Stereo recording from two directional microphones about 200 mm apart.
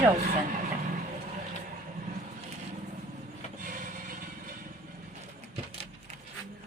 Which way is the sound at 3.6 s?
45° right (ahead or behind).